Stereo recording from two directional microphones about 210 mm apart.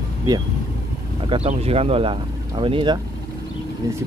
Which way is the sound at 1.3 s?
30° right (ahead or behind).